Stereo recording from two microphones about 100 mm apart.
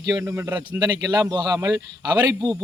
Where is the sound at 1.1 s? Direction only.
40° right (ahead or behind).